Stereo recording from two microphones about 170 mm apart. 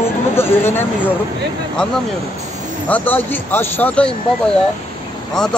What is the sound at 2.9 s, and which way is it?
Speech, 10° left (ahead or behind).